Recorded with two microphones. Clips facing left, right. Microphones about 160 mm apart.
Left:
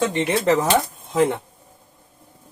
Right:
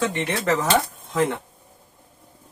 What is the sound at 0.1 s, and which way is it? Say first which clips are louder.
Speech: left 4 dB; 25° left (ahead or behind).